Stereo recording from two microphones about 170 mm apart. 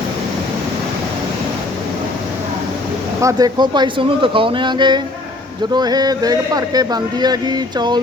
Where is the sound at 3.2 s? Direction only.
25° right (ahead or behind).